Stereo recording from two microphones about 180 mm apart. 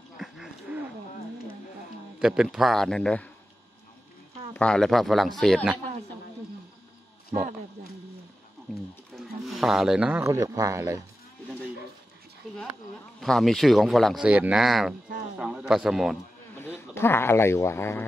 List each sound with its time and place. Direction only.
0.2 s a sound: 5° right (ahead or behind)
2.1 s speech: 5° right (ahead or behind)
4.6 s speech: 5° left (ahead or behind)
9.1 s wild animals: centre (ahead or behind)
10.2 s speech: 20° right (ahead or behind)
13.2 s speech: centre (ahead or behind)
15.3 s a sound: 5° right (ahead or behind)
16.5 s speech: 10° left (ahead or behind)